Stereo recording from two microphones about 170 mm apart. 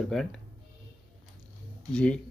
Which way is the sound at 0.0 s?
Centre (ahead or behind).